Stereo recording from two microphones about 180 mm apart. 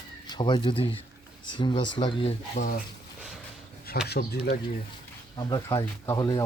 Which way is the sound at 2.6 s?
45° left (ahead or behind).